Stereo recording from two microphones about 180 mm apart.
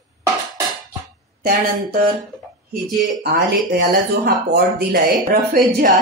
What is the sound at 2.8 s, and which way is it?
Speech, 65° right (ahead or behind).